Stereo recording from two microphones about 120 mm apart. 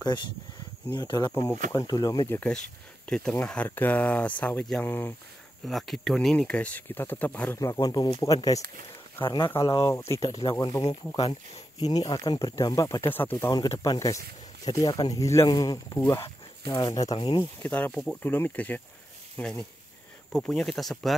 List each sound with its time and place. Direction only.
0.0 s speech: 40° left (ahead or behind)
2.2 s speech: 15° left (ahead or behind)
3.1 s speech: 5° left (ahead or behind)
5.7 s speech: centre (ahead or behind)
7.6 s speech: 30° left (ahead or behind)
9.8 s speech: 25° left (ahead or behind)
11.1 s speech: 55° left (ahead or behind)
11.8 s speech: 35° left (ahead or behind); by 13.5 s 15° left (ahead or behind)
13.5 s speech: 30° left (ahead or behind)
17.4 s speech: 15° left (ahead or behind)
20.3 s speech: 5° left (ahead or behind)